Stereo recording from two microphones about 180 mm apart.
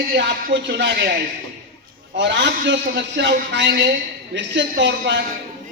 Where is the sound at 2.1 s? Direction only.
80° right.